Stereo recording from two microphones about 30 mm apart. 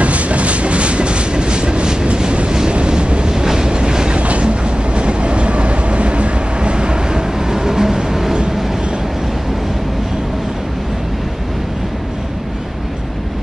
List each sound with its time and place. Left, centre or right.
0.0 s train: right
2.7 s vehicle: right
3.3 s train: right
4.2 s train: right; by 8.4 s centre